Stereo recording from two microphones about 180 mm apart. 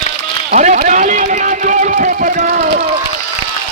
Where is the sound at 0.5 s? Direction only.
40° right (ahead or behind).